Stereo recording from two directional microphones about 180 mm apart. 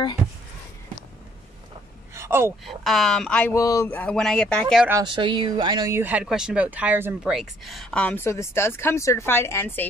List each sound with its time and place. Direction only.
2.1 s a sound: 15° right (ahead or behind)
2.6 s speech: centre (ahead or behind)
5.0 s speech: 25° right (ahead or behind); by 9.8 s 10° left (ahead or behind)